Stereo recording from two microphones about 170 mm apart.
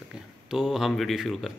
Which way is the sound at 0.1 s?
5° right (ahead or behind).